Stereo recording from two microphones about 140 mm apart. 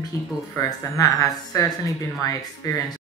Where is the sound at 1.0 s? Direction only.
25° left (ahead or behind).